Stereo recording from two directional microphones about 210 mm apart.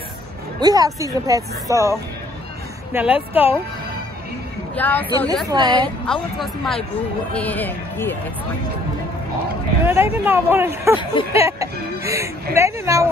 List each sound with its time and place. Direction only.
0.6 s speech: 20° right (ahead or behind)
4.7 s speech: 10° left (ahead or behind)
5.5 s a woman's voice: 20° right (ahead or behind)
6.4 s speech: centre (ahead or behind)
9.8 s speech: 10° right (ahead or behind)